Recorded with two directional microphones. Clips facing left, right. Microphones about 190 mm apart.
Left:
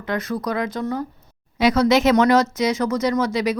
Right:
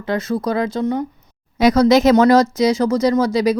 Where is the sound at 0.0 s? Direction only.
30° right (ahead or behind).